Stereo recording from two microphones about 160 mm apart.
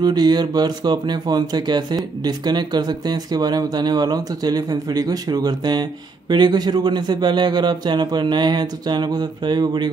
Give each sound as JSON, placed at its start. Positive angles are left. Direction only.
{"t": 0.0, "sound": "speech", "side_deg": -25}